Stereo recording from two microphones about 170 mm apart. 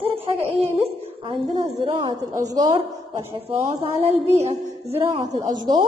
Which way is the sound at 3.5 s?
35° right (ahead or behind).